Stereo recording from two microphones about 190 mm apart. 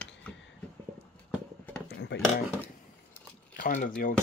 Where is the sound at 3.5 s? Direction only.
45° left (ahead or behind).